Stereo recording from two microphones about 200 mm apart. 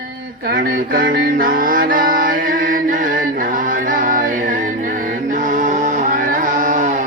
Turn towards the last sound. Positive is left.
turn(degrees=-40)  # may be behind; listen again after turning